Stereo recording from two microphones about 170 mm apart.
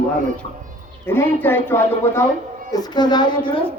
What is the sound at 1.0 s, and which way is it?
A woman's voice, 15° left (ahead or behind).